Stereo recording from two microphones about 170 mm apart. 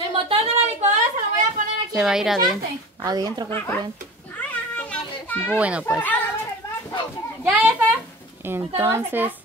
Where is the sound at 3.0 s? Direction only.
25° right (ahead or behind).